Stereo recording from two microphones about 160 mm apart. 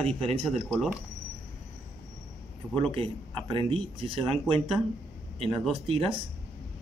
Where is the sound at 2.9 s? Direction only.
35° right (ahead or behind).